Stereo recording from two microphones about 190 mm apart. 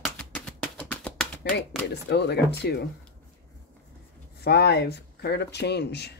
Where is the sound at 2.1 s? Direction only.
60° left (ahead or behind).